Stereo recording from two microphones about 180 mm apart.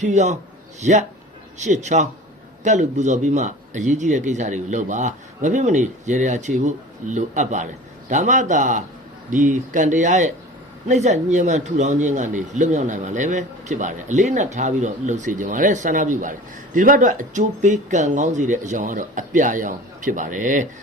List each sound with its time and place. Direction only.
0.0 s a man's voice: 40° right (ahead or behind)